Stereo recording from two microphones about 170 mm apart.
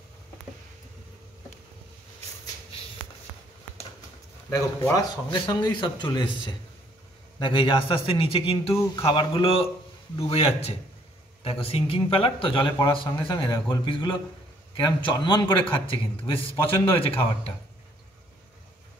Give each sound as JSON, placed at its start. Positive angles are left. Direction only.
{"t": 4.8, "sound": "a man's voice", "side_deg": 20}